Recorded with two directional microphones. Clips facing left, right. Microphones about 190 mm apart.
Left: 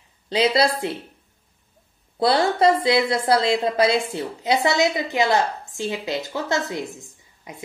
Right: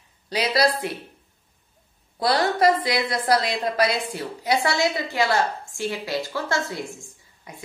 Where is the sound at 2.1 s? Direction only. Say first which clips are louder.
Left 3 dB; 25° left (ahead or behind).